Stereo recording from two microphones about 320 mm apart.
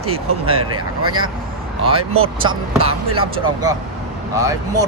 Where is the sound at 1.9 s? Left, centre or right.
Right.